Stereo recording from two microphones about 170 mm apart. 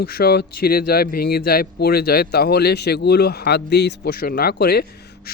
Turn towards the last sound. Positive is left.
turn(degrees=65)  # may be behind; listen again after turning